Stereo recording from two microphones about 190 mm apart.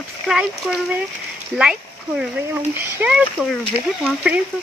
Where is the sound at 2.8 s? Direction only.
10° right (ahead or behind).